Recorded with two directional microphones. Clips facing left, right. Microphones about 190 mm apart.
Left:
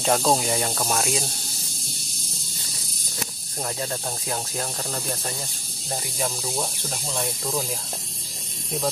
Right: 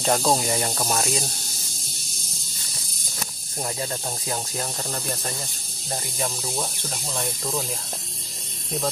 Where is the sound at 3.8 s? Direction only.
Centre (ahead or behind).